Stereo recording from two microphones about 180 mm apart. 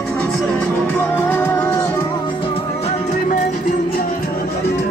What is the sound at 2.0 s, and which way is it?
Music, 30° left (ahead or behind).